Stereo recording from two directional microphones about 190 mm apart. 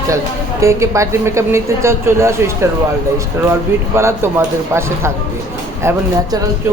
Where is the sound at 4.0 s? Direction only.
15° right (ahead or behind).